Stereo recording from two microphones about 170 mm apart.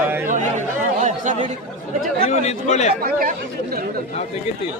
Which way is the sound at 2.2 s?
40° left (ahead or behind).